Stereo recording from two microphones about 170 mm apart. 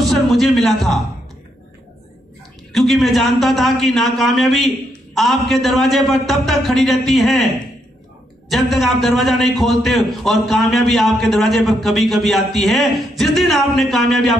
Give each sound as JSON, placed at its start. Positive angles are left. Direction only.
{"t": 0.0, "sound": "a sound", "side_deg": 0}
{"t": 2.7, "sound": "a man's voice", "side_deg": 0}
{"t": 8.5, "sound": "a man's voice", "side_deg": 0}